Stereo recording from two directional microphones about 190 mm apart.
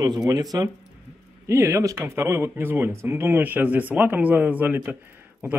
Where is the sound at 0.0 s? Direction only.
20° right (ahead or behind).